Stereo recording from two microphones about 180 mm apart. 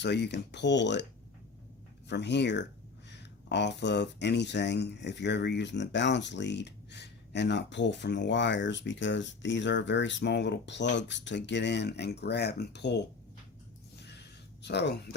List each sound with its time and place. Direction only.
0.0 s speech: 70° left (ahead or behind)
2.0 s speech: 70° left (ahead or behind)
13.9 s a sound: 70° left (ahead or behind)